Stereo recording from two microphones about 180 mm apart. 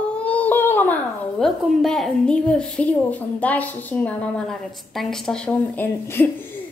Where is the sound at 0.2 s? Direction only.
10° left (ahead or behind).